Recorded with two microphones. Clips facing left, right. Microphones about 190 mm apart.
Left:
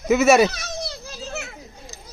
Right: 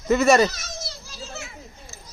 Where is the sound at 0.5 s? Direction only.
65° left (ahead or behind).